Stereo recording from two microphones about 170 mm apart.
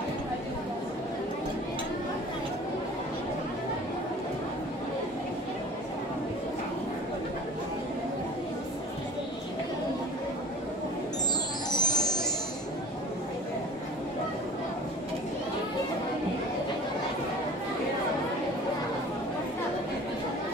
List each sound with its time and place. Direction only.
11.7 s music: 25° left (ahead or behind)